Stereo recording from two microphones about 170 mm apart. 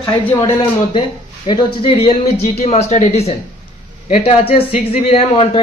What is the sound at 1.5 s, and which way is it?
Speech, 30° left (ahead or behind).